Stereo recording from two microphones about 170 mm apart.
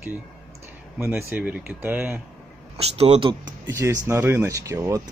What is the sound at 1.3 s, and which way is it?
Speech, 10° right (ahead or behind).